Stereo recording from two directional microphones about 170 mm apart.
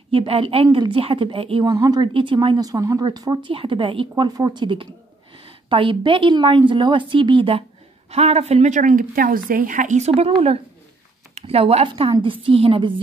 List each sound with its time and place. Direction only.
0.1 s a woman's voice: 35° right (ahead or behind)